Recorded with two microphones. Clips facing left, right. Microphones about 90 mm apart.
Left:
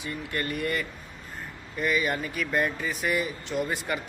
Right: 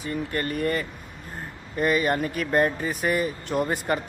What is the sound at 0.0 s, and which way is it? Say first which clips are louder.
Speech: right 4 dB; 40° right (ahead or behind).